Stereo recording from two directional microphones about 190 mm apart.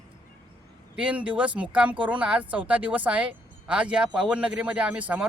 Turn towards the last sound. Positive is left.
turn(degrees=-5)  # may be behind; listen again after turning